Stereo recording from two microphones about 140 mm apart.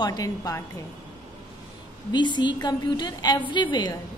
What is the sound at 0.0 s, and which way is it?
Speech, 25° left (ahead or behind).